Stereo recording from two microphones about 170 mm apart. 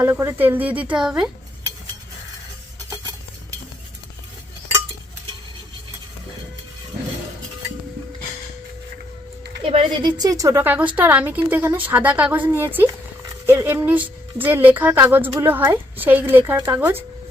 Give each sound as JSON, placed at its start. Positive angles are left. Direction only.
{"t": 0.0, "sound": "a woman's voice", "side_deg": -15}
{"t": 9.6, "sound": "a woman's voice", "side_deg": -25}
{"t": 12.9, "sound": "a sound", "side_deg": -15}
{"t": 14.4, "sound": "a woman's voice", "side_deg": -10}